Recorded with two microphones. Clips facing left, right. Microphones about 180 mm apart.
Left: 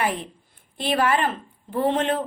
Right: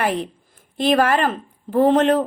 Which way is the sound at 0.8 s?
40° right (ahead or behind).